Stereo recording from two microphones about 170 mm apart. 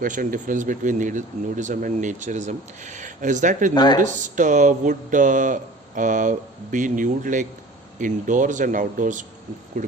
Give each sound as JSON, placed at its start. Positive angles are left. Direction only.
{"t": 0.0, "sound": "speech", "side_deg": -55}
{"t": 3.8, "sound": "speech", "side_deg": 25}
{"t": 4.4, "sound": "speech", "side_deg": -45}